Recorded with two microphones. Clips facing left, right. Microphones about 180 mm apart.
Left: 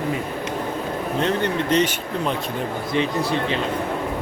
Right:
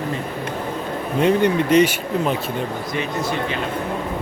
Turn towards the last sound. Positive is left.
turn(degrees=30)  # may be behind; listen again after turning